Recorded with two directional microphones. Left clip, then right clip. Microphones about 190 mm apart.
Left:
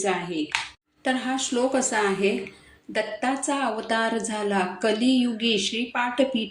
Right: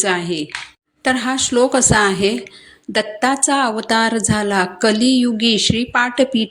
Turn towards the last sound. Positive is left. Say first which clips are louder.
# right 8 dB
turn(degrees=-50)  # may be behind; listen again after turning